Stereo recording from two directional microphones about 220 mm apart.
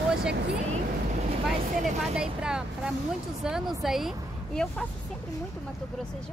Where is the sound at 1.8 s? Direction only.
30° right (ahead or behind).